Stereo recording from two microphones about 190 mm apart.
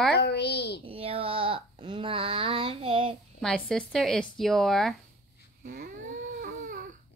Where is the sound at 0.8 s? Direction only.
30° right (ahead or behind).